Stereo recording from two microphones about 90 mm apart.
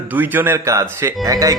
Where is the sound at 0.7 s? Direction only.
35° right (ahead or behind).